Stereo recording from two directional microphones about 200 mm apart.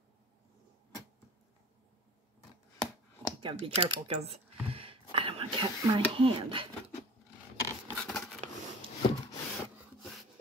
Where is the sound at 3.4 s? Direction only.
30° right (ahead or behind).